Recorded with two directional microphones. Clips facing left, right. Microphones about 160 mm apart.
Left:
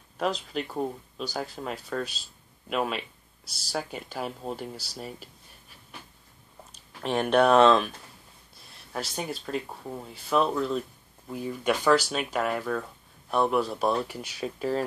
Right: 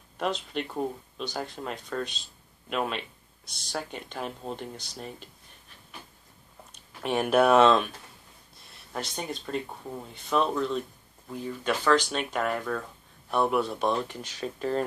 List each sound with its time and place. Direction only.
0.2 s speech: centre (ahead or behind)
7.0 s speech: 5° right (ahead or behind)
8.9 s speech: 5° left (ahead or behind)